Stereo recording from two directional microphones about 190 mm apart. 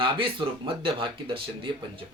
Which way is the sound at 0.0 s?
25° right (ahead or behind).